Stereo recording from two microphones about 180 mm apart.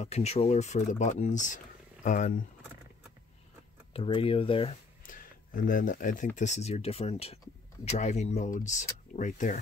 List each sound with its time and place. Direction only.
0.0 s speech: 35° left (ahead or behind)
3.9 s speech: 30° left (ahead or behind)
5.0 s speech: 50° left (ahead or behind)